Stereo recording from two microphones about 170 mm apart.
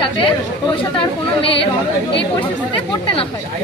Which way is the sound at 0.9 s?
30° left (ahead or behind).